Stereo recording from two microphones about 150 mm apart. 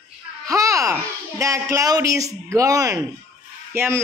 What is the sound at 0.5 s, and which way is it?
Babbling, 20° right (ahead or behind).